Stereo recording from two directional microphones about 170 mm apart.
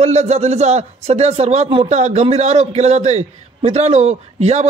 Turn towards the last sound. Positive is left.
turn(degrees=-40)  # may be behind; listen again after turning